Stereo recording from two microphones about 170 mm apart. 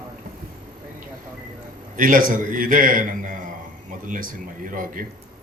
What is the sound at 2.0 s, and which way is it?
A man's voice, 55° right (ahead or behind).